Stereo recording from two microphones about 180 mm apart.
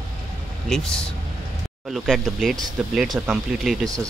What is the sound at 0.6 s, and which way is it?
Speech, 5° left (ahead or behind).